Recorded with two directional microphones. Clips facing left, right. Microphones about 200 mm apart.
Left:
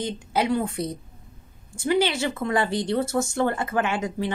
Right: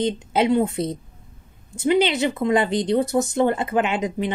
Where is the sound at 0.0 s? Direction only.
25° right (ahead or behind).